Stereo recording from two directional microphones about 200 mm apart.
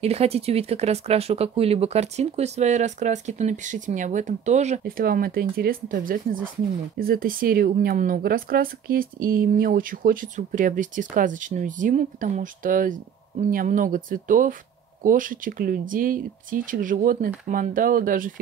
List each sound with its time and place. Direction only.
0.0 s speech: 30° right (ahead or behind)